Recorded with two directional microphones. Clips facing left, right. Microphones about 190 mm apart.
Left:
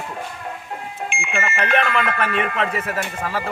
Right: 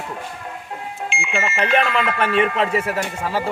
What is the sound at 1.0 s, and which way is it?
Alarm, 55° left (ahead or behind).